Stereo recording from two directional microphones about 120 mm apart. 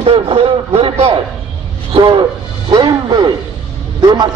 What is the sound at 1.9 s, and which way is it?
A man's voice, 40° right (ahead or behind).